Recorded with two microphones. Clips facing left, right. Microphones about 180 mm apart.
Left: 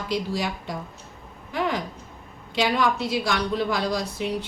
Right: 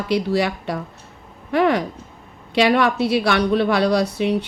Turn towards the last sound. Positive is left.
turn(degrees=-65)  # may be behind; listen again after turning